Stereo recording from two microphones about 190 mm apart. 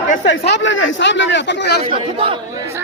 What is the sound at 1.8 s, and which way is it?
Speech, 30° right (ahead or behind).